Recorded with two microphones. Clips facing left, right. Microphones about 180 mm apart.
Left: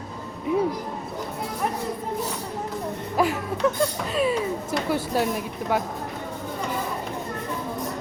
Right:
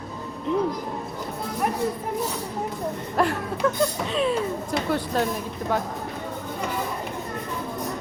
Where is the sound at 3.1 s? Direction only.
5° left (ahead or behind).